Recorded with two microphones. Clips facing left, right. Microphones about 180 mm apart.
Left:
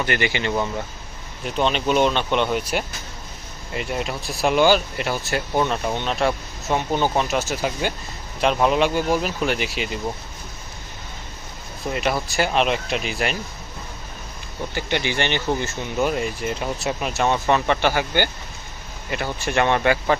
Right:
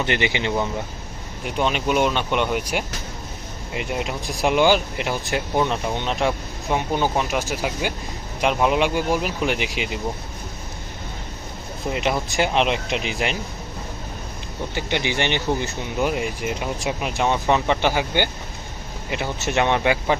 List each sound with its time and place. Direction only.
0.0 s speech: 20° right (ahead or behind)
11.9 s speech: 20° right (ahead or behind)
14.8 s speech: 15° right (ahead or behind)